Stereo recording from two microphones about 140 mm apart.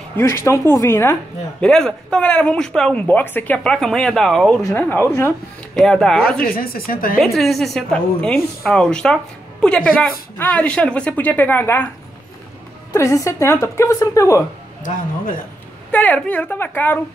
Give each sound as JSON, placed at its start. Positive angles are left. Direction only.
{"t": 0.2, "sound": "speech", "side_deg": 20}
{"t": 1.6, "sound": "speech", "side_deg": 5}
{"t": 4.6, "sound": "speech", "side_deg": 15}
{"t": 5.8, "sound": "speech", "side_deg": 5}
{"t": 6.5, "sound": "speech", "side_deg": 90}
{"t": 7.2, "sound": "speech", "side_deg": 0}
{"t": 12.9, "sound": "a woman's voice", "side_deg": 20}
{"t": 14.8, "sound": "speech", "side_deg": 75}
{"t": 15.9, "sound": "speech", "side_deg": 10}